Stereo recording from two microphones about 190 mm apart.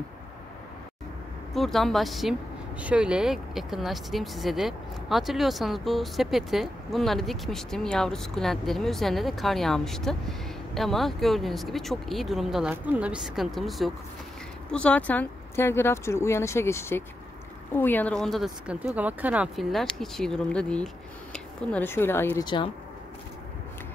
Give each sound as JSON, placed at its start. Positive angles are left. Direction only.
{"t": 1.5, "sound": "speech", "side_deg": 0}
{"t": 22.4, "sound": "speech", "side_deg": 25}